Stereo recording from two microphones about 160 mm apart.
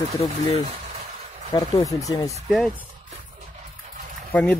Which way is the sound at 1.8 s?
20° left (ahead or behind).